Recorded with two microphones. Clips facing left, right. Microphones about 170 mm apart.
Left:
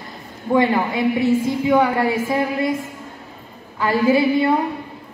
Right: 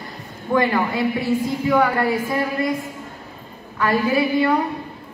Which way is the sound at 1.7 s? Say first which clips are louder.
Left 1 dB; 25° left (ahead or behind).